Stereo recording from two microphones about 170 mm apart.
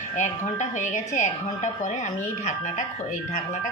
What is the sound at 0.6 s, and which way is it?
A woman's voice, 45° left (ahead or behind).